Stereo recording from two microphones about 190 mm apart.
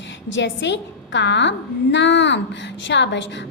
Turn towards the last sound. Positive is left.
turn(degrees=70)  # may be behind; listen again after turning